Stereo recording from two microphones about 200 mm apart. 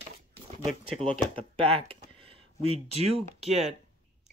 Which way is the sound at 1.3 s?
30° right (ahead or behind).